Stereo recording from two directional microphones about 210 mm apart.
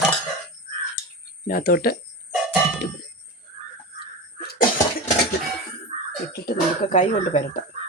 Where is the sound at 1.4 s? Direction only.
45° left (ahead or behind).